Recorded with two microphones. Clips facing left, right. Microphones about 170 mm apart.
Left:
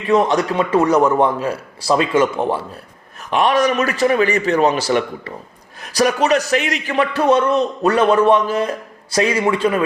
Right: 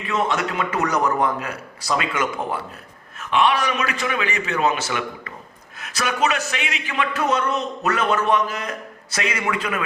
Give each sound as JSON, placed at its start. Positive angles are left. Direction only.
{"t": 0.1, "sound": "a man's voice", "side_deg": 35}
{"t": 3.2, "sound": "a man's voice", "side_deg": 40}